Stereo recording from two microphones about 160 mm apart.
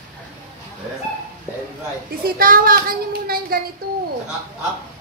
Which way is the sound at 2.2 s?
65° right (ahead or behind).